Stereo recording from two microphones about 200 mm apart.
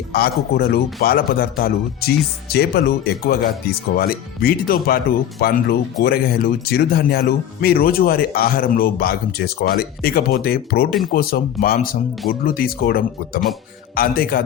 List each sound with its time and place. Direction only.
0.1 s speech: 50° left (ahead or behind)